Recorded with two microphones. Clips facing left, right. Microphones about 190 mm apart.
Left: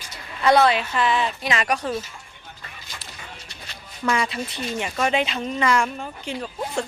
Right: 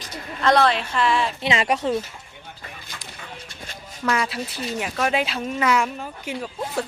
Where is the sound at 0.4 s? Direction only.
5° left (ahead or behind).